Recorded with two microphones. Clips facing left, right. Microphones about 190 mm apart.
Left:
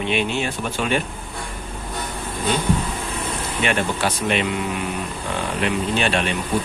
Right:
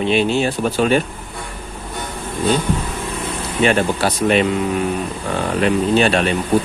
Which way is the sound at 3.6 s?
35° right (ahead or behind).